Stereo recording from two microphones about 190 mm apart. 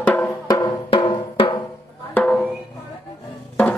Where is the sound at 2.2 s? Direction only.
5° left (ahead or behind).